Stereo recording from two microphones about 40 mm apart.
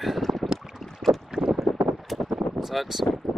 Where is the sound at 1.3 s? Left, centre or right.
Centre.